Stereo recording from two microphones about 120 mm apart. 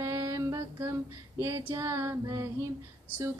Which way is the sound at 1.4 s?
25° right (ahead or behind).